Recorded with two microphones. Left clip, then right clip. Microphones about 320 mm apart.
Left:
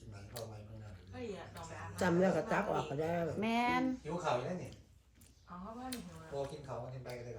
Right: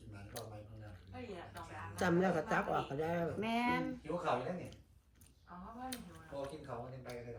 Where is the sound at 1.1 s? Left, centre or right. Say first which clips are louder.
Left 3 dB; centre.